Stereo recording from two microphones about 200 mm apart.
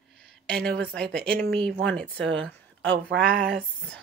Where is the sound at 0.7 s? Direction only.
5° left (ahead or behind).